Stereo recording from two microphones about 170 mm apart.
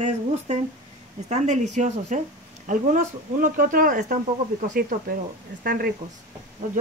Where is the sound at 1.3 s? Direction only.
45° right (ahead or behind).